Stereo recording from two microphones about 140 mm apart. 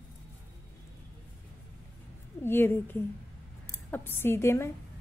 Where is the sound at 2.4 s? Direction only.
15° left (ahead or behind).